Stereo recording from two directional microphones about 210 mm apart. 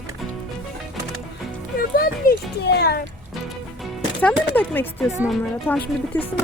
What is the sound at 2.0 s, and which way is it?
Speech, 50° left (ahead or behind).